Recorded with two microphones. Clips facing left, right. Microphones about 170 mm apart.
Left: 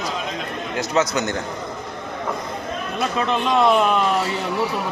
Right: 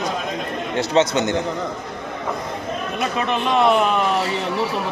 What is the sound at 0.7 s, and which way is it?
Speech, 25° right (ahead or behind).